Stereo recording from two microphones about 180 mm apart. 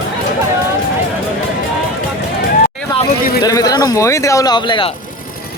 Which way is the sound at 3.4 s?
20° left (ahead or behind).